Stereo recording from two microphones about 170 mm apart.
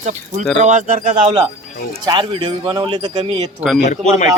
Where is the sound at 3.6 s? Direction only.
5° right (ahead or behind).